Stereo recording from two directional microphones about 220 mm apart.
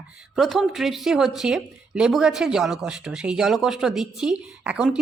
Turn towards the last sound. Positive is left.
turn(degrees=-5)  # may be behind; listen again after turning